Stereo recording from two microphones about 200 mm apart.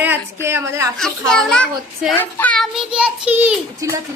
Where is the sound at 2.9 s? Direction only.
5° right (ahead or behind).